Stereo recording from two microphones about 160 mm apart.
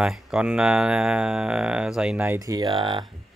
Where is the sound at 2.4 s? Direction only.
25° right (ahead or behind).